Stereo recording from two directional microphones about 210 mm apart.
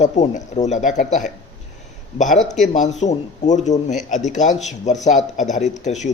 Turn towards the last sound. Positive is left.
turn(degrees=35)  # may be behind; listen again after turning